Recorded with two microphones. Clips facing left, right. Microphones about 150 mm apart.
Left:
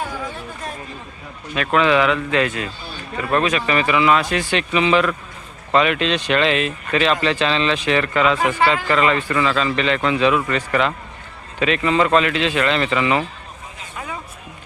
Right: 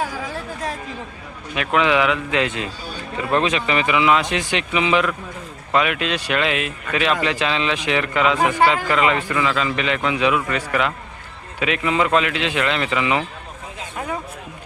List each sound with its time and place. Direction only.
1.5 s speech: 15° right (ahead or behind)